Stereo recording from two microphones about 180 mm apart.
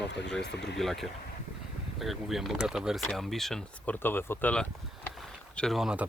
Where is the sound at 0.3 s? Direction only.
70° left (ahead or behind).